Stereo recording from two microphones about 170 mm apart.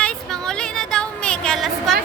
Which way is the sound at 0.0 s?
5° left (ahead or behind).